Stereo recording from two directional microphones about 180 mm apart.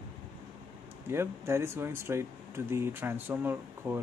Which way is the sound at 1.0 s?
15° right (ahead or behind).